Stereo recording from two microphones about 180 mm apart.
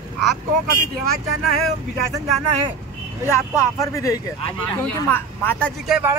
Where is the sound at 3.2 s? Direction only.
15° left (ahead or behind).